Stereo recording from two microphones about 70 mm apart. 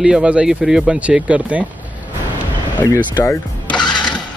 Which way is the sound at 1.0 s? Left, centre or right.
Centre.